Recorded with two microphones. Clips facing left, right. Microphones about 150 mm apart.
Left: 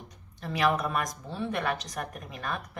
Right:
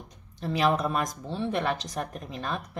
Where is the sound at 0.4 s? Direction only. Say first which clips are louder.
Right 2 dB; 25° right (ahead or behind).